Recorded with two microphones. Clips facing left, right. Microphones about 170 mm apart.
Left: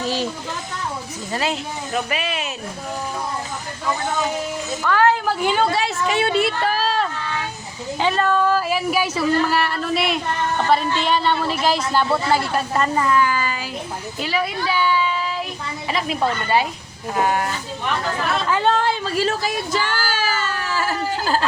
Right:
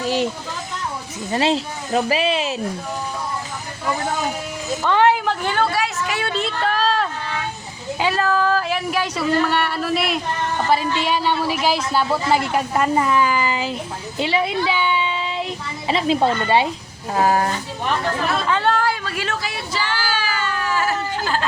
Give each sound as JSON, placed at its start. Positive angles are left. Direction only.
{"t": 1.3, "sound": "speech", "side_deg": -25}
{"t": 4.8, "sound": "speech", "side_deg": -20}
{"t": 5.2, "sound": "a woman's voice", "side_deg": 10}
{"t": 5.7, "sound": "a sound", "side_deg": 25}
{"t": 6.3, "sound": "a woman's voice", "side_deg": 5}
{"t": 18.6, "sound": "speech", "side_deg": 25}